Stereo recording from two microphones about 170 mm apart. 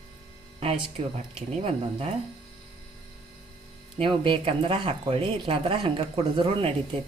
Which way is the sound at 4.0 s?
30° right (ahead or behind).